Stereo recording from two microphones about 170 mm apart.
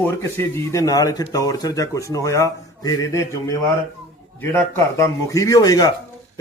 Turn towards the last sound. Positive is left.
turn(degrees=20)  # may be behind; listen again after turning